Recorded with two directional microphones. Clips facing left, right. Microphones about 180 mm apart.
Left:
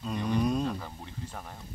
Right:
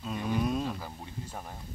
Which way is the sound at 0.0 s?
5° right (ahead or behind).